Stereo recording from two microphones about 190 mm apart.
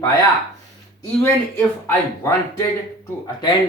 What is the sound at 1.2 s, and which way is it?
Speech, 10° left (ahead or behind).